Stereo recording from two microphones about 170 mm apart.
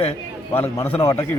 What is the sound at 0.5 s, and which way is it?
Speech, 10° left (ahead or behind).